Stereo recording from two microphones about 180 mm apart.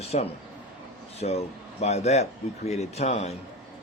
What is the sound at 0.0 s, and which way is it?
Speech, 35° left (ahead or behind).